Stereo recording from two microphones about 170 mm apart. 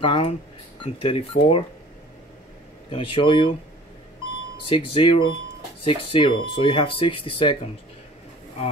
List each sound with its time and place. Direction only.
0.0 s speech: 30° left (ahead or behind)
2.9 s speech: 30° left (ahead or behind)
4.6 s speech: 30° left (ahead or behind)